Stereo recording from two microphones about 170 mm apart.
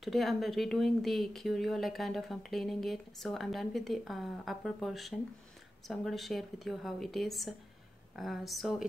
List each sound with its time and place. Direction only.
0.0 s speech: centre (ahead or behind)